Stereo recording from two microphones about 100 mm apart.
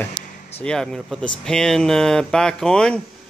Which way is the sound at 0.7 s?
5° left (ahead or behind).